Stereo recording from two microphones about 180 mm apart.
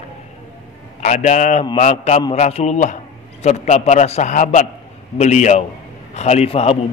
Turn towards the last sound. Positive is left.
turn(degrees=35)  # may be behind; listen again after turning